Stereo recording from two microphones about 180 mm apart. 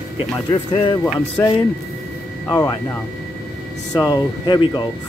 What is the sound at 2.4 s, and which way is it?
Speech, 20° left (ahead or behind).